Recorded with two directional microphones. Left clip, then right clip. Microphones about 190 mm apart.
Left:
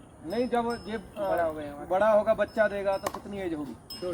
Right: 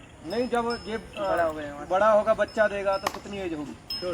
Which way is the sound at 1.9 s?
Centre (ahead or behind).